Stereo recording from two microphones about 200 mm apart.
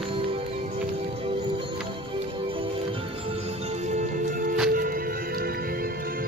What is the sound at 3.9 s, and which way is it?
Music, 40° right (ahead or behind).